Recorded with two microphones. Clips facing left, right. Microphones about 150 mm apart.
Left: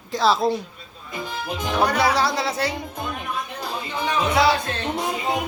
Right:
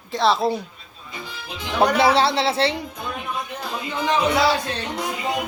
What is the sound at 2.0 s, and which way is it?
Speech, 25° right (ahead or behind).